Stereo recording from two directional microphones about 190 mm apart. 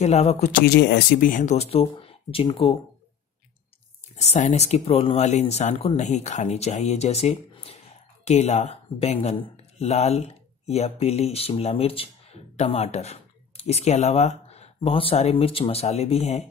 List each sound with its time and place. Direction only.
0.0 s speech: 35° left (ahead or behind)
0.5 s speech: 55° left (ahead or behind)
1.3 s speech: 40° left (ahead or behind)
4.2 s speech: 35° left (ahead or behind)